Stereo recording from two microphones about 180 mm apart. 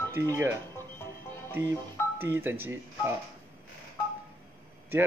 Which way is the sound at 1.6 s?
10° right (ahead or behind).